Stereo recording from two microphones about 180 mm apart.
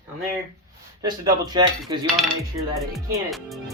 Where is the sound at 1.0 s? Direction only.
20° right (ahead or behind).